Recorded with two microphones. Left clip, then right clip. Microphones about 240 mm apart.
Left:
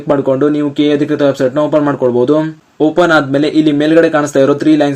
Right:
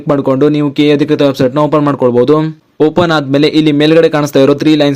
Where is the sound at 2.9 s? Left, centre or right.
Right.